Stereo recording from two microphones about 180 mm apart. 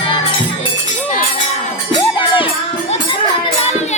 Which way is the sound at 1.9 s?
30° left (ahead or behind).